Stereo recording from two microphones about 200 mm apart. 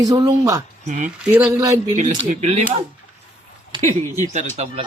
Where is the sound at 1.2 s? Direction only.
5° right (ahead or behind).